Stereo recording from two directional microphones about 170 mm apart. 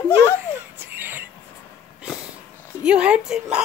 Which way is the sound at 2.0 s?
5° right (ahead or behind).